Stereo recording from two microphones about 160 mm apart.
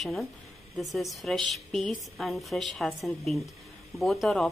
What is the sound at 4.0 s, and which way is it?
Speech, centre (ahead or behind).